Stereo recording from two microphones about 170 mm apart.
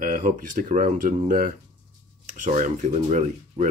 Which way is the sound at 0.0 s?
55° right (ahead or behind).